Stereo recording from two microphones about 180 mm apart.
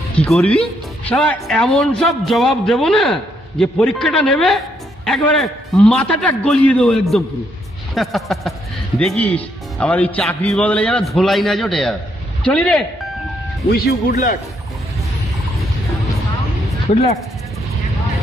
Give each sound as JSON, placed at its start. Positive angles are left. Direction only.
{"t": 0.1, "sound": "speech", "side_deg": 5}
{"t": 13.7, "sound": "speech", "side_deg": 55}